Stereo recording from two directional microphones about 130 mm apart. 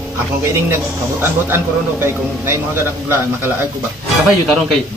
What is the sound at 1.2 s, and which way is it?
Speech, 20° right (ahead or behind).